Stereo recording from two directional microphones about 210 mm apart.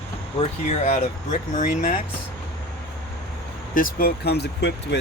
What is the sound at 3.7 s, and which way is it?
Speech, 45° left (ahead or behind).